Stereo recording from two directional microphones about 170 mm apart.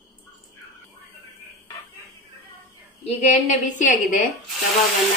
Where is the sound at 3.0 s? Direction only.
40° left (ahead or behind).